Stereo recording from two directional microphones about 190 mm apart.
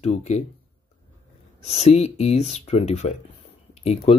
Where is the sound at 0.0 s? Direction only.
35° left (ahead or behind).